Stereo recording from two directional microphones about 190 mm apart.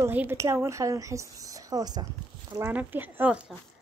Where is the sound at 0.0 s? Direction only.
10° right (ahead or behind).